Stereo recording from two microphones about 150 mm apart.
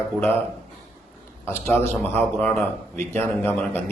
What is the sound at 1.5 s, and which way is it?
Speech, 15° left (ahead or behind).